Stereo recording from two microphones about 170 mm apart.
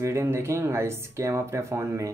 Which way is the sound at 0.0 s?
15° right (ahead or behind).